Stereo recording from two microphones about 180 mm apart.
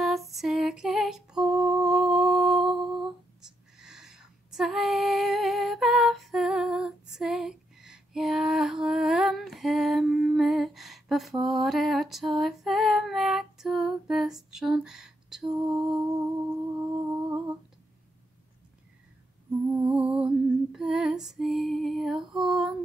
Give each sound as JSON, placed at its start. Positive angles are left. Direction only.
{"t": 0.0, "sound": "lullaby", "side_deg": 0}
{"t": 2.9, "sound": "a sound", "side_deg": 0}
{"t": 11.4, "sound": "female singing", "side_deg": 0}
{"t": 15.7, "sound": "music", "side_deg": -5}
{"t": 16.9, "sound": "humming", "side_deg": -25}
{"t": 19.9, "sound": "lullaby", "side_deg": -5}